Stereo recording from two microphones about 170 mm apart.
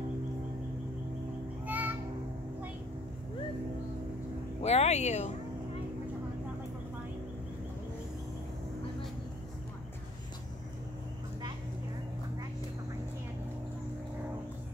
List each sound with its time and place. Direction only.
1.7 s music: 10° right (ahead or behind)
4.6 s speech: 40° left (ahead or behind)